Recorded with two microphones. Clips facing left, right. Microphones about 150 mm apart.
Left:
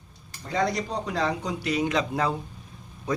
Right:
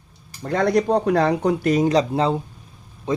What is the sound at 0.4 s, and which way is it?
Speech, 55° right (ahead or behind).